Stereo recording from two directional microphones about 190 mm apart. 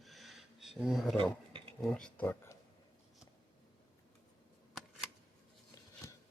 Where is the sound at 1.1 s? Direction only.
30° right (ahead or behind).